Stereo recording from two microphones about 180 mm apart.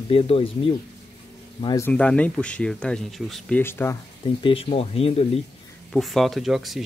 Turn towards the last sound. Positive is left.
turn(degrees=0)  # may be behind; listen again after turning